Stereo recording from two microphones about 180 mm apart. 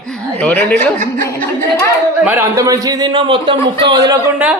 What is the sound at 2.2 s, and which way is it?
A man's voice, 10° right (ahead or behind).